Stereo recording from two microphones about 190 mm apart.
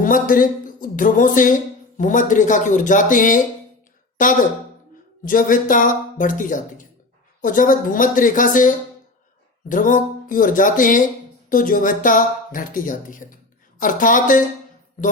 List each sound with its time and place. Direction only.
0.0 s speech: 45° left (ahead or behind)